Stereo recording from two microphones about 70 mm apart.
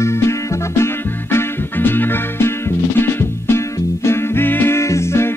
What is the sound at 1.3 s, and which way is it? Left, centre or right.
Music, left.